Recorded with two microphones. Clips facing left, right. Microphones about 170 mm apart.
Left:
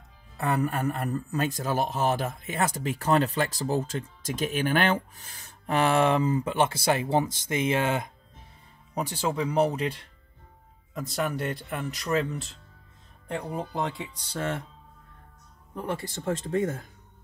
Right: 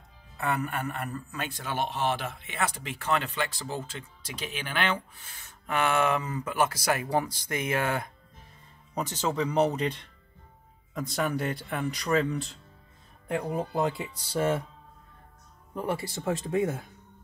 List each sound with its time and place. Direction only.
0.4 s speech: 35° left (ahead or behind)
8.9 s speech: 10° left (ahead or behind); by 14.6 s 10° right (ahead or behind)
15.7 s speech: 10° right (ahead or behind)